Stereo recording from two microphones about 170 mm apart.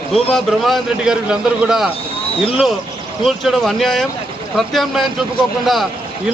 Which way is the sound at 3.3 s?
Centre (ahead or behind).